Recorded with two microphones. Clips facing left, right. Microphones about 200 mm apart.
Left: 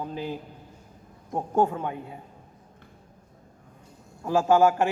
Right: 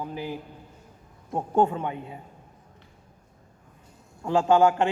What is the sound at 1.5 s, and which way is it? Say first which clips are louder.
Speech: right 1 dB; 20° right (ahead or behind).